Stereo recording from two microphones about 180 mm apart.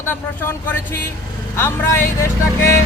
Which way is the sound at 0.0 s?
10° left (ahead or behind).